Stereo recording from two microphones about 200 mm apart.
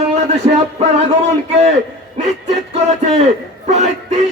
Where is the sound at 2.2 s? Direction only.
35° right (ahead or behind).